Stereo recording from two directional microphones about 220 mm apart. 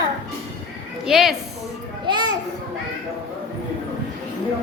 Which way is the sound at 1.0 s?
Centre (ahead or behind).